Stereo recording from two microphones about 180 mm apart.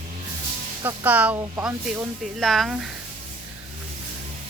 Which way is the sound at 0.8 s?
10° right (ahead or behind).